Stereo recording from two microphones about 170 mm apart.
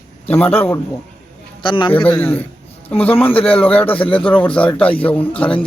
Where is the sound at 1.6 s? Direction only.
30° left (ahead or behind).